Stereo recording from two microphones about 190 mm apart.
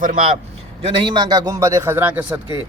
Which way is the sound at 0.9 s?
25° right (ahead or behind).